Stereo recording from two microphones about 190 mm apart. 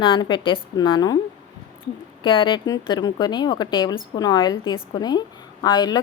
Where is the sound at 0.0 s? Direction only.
25° left (ahead or behind).